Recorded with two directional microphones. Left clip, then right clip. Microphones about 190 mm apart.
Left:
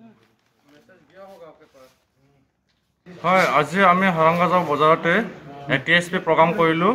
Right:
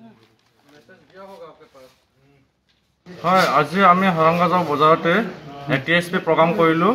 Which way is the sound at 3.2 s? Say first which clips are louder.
Right 1 dB; 10° left (ahead or behind).